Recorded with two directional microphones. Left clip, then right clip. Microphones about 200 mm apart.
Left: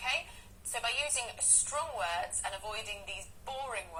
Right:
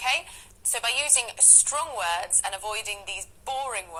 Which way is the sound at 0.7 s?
45° right (ahead or behind).